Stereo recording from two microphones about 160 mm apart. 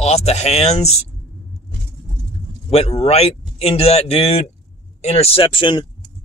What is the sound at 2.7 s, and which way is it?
Speech, 40° left (ahead or behind).